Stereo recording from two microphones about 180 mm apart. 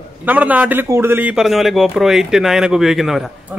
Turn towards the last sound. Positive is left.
turn(degrees=0)  # may be behind; listen again after turning